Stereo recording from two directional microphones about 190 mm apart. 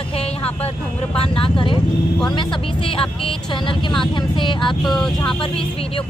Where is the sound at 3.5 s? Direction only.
25° left (ahead or behind).